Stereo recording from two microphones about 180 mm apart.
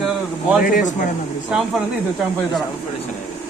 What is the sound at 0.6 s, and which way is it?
Speech, 50° left (ahead or behind).